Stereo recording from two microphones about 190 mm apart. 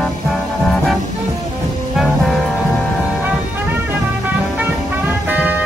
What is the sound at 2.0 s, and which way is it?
Music, centre (ahead or behind).